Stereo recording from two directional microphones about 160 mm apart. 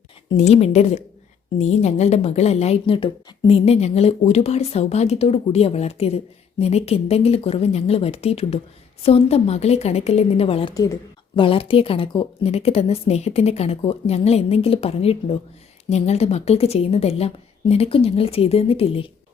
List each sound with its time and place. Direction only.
0.3 s a woman's voice: 40° left (ahead or behind)